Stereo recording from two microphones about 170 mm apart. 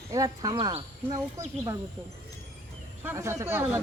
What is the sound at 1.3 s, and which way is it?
Speech, 15° right (ahead or behind).